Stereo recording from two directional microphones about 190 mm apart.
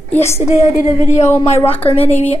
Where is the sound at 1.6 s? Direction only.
10° left (ahead or behind).